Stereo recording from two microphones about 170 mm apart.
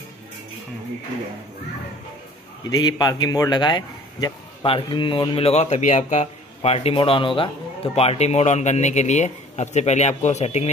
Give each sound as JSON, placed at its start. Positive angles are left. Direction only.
{"t": 2.8, "sound": "a man's voice", "side_deg": 25}